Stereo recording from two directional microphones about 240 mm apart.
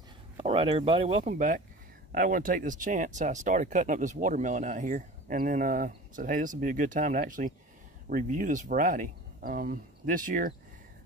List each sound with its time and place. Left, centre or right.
0.4 s speech: right